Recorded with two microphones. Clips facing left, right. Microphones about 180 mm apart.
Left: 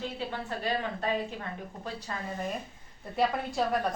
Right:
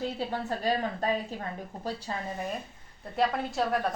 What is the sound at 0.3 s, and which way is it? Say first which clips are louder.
Speech: right 3 dB; 40° right (ahead or behind).